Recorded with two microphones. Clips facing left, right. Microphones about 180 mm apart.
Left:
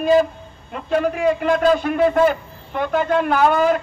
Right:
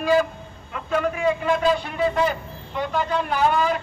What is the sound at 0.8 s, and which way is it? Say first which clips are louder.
A man's voice: left 4 dB; 35° left (ahead or behind).